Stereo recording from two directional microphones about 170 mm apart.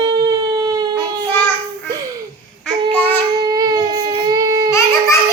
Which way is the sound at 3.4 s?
25° right (ahead or behind).